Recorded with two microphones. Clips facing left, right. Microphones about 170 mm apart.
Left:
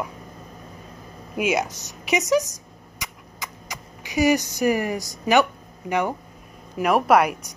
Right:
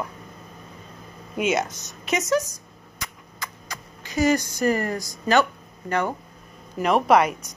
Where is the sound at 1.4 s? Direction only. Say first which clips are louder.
Even; 10° left (ahead or behind).